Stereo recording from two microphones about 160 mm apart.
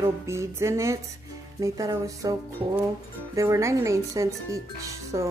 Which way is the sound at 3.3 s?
20° right (ahead or behind).